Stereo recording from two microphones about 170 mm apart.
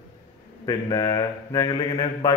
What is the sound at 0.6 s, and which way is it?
A man's voice, 25° left (ahead or behind).